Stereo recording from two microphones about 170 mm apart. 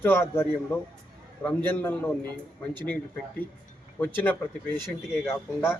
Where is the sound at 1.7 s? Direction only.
10° left (ahead or behind).